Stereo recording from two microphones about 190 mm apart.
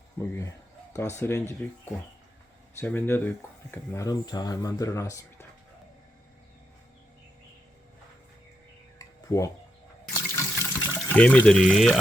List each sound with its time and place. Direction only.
0.2 s speech: 15° left (ahead or behind)
9.0 s a sound: 15° left (ahead or behind)
10.3 s water: 15° left (ahead or behind)